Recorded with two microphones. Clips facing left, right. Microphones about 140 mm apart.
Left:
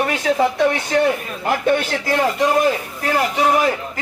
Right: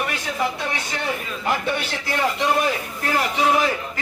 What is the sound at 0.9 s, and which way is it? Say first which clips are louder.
Speech: left 13 dB; 55° left (ahead or behind).